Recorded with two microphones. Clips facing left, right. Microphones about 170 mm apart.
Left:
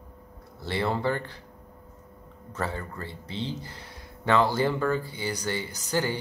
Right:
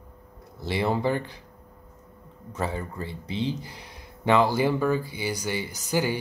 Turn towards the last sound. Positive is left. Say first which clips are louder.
# right 2 dB
turn(degrees=-10)  # may be behind; listen again after turning